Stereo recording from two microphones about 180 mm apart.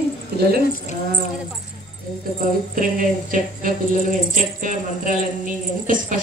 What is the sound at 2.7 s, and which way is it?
A woman's voice, 50° right (ahead or behind).